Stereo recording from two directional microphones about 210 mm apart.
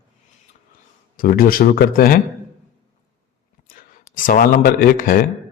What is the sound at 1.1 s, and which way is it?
Speech, 45° left (ahead or behind).